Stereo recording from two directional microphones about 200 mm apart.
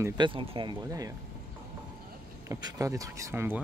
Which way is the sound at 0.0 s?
25° right (ahead or behind).